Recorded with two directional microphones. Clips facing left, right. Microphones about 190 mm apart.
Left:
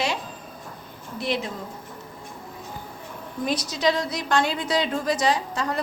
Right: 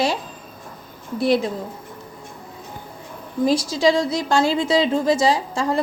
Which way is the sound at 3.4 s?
30° right (ahead or behind).